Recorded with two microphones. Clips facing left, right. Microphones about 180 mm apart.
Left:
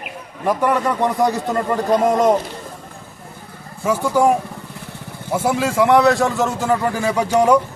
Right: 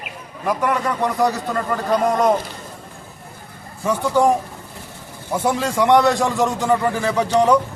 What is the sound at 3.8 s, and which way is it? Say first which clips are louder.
Speech: left 1 dB; 10° left (ahead or behind).